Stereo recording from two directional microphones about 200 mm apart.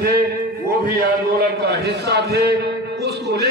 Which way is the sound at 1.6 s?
55° right (ahead or behind).